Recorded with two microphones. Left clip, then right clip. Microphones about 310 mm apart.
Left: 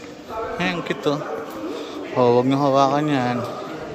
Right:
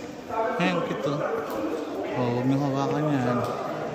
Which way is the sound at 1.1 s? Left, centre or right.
Centre.